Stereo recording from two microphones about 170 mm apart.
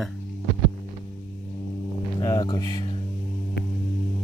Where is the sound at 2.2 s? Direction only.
20° left (ahead or behind).